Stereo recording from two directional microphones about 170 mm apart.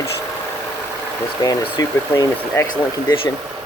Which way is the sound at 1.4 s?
20° left (ahead or behind).